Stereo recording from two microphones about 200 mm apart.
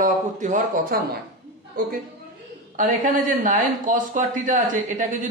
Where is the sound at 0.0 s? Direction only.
40° right (ahead or behind).